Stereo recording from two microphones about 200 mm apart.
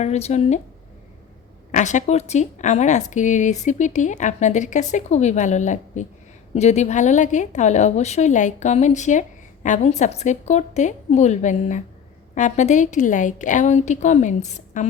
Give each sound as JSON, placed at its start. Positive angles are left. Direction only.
{"t": 0.0, "sound": "speech", "side_deg": 35}
{"t": 1.7, "sound": "speech", "side_deg": 35}